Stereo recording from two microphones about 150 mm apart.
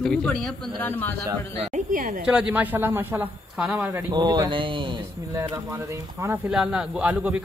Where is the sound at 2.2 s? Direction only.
5° right (ahead or behind).